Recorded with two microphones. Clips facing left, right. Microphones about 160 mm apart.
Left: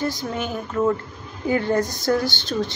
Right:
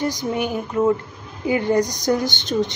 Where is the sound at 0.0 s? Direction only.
15° right (ahead or behind).